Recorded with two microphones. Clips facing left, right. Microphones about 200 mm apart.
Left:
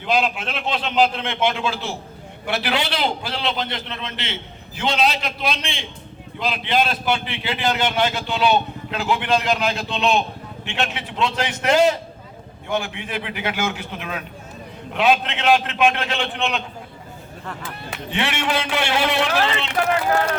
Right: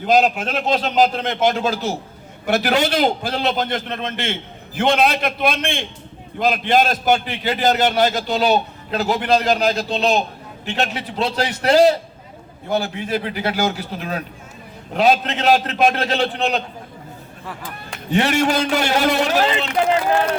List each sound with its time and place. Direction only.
0.0 s a man's voice: 40° right (ahead or behind)
18.1 s a man's voice: 40° right (ahead or behind)
19.8 s speech: 20° right (ahead or behind)